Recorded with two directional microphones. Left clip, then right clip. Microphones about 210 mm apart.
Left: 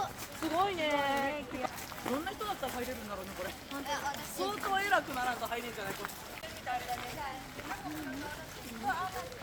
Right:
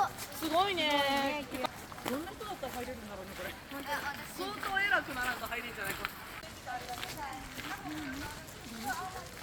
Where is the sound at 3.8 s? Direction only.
50° left (ahead or behind).